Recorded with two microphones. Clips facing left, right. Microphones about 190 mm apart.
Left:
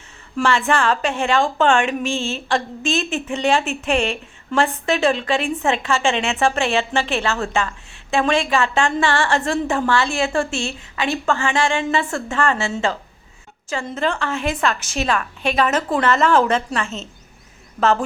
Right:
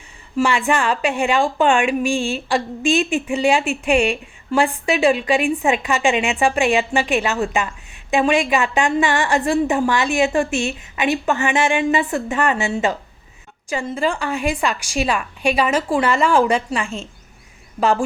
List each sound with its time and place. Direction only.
0.3 s a woman's voice: 15° right (ahead or behind)